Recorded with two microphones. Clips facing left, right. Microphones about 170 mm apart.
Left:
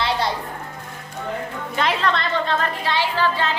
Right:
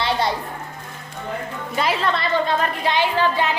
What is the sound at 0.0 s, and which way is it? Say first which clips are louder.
Music: right 1 dB; centre (ahead or behind).